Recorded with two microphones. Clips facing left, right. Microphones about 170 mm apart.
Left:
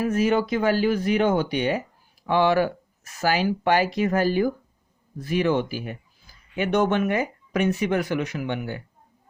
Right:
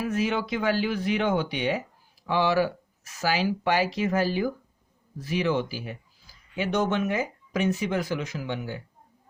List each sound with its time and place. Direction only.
0.0 s speech: 45° left (ahead or behind); by 8.8 s 60° left (ahead or behind)